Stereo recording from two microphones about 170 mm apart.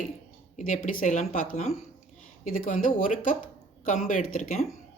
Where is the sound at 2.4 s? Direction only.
55° left (ahead or behind).